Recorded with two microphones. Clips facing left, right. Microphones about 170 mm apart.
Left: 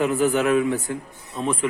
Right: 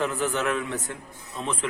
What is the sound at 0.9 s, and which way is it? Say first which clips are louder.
Speech: left 8 dB; 5° left (ahead or behind).